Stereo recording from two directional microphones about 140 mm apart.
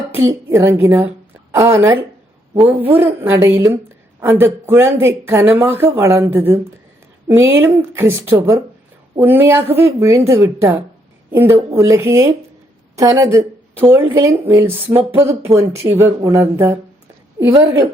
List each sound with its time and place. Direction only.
0.2 s a woman's voice: 20° right (ahead or behind)